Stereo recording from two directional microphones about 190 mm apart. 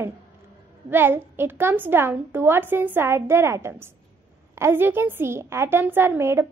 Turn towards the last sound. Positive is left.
turn(degrees=-15)  # may be behind; listen again after turning